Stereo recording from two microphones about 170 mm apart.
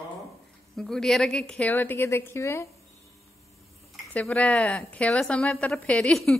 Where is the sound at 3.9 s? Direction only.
5° left (ahead or behind).